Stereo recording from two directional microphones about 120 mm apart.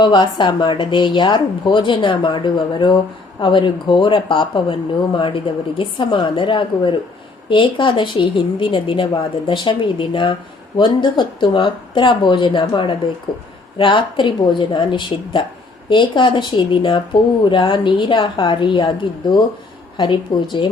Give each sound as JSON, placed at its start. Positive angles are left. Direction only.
{"t": 0.0, "sound": "speech", "side_deg": 40}
{"t": 20.0, "sound": "speech", "side_deg": 40}